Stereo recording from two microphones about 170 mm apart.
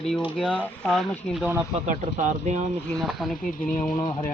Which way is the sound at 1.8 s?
45° right (ahead or behind).